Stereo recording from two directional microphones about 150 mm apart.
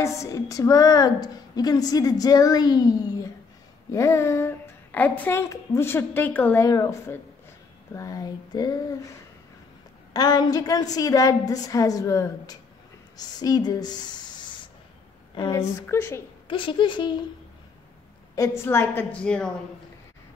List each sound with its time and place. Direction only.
0.0 s a woman's voice: 20° left (ahead or behind)
10.1 s a woman's voice: 25° left (ahead or behind)
15.5 s a woman's voice: 15° left (ahead or behind)
16.4 s speech: 35° left (ahead or behind)
18.6 s a woman's voice: 15° left (ahead or behind)